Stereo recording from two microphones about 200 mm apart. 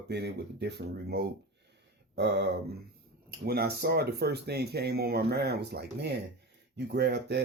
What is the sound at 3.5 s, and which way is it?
Speech, 50° right (ahead or behind).